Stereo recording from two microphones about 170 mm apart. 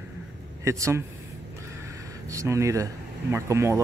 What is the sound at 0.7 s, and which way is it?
Speech, 15° right (ahead or behind).